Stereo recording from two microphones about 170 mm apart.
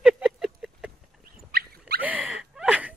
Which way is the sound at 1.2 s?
65° right (ahead or behind).